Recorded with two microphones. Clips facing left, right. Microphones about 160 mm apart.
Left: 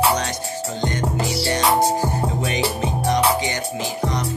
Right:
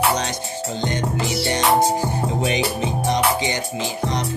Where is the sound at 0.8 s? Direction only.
20° right (ahead or behind).